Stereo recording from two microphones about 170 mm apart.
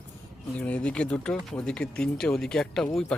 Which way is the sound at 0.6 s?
5° left (ahead or behind).